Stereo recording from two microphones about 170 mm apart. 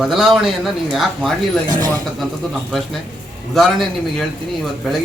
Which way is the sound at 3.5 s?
Centre (ahead or behind).